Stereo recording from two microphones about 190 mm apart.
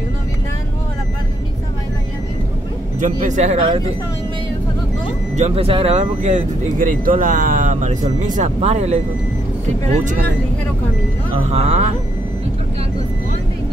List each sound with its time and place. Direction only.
3.0 s speech: 40° right (ahead or behind)
5.3 s speech: 35° right (ahead or behind)
11.5 s speech: 35° right (ahead or behind)